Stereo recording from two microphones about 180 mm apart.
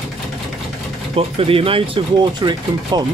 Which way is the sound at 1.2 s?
30° right (ahead or behind).